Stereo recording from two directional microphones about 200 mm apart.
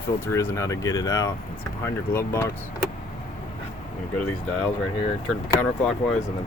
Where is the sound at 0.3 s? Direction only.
15° left (ahead or behind).